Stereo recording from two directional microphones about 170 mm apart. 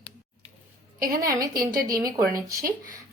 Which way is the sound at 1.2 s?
20° right (ahead or behind).